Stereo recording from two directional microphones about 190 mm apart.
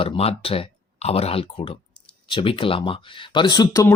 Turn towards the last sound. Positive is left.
turn(degrees=20)  # may be behind; listen again after turning